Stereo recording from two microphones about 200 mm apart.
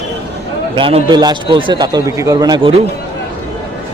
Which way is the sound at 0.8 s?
25° right (ahead or behind).